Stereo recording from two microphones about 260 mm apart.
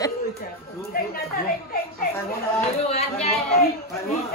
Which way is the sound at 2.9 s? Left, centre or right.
Left.